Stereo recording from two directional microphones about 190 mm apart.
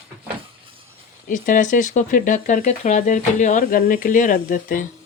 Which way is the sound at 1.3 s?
45° left (ahead or behind).